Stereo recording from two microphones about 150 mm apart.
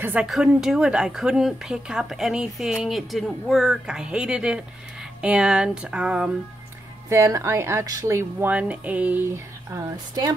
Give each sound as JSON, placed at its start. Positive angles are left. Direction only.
{"t": 0.0, "sound": "speech", "side_deg": -5}
{"t": 5.2, "sound": "a sound", "side_deg": -5}
{"t": 7.1, "sound": "speech", "side_deg": -20}